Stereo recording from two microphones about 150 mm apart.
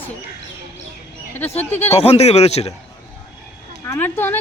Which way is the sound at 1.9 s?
45° left (ahead or behind).